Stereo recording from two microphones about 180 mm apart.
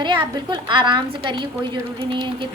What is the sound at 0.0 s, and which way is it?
A woman's voice, 25° right (ahead or behind).